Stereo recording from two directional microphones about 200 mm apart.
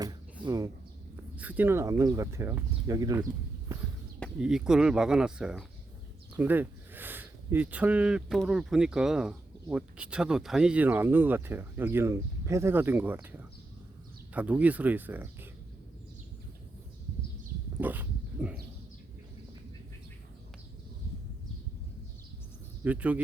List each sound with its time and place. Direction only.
0.4 s speech: 20° right (ahead or behind)
4.2 s speech: 5° right (ahead or behind)
17.7 s dog: 10° right (ahead or behind)
22.8 s speech: 5° right (ahead or behind)